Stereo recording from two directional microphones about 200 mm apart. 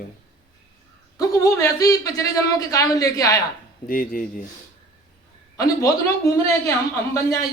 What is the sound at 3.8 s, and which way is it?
Speech, 45° left (ahead or behind).